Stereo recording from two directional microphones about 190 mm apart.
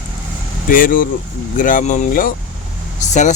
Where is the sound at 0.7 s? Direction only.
45° left (ahead or behind).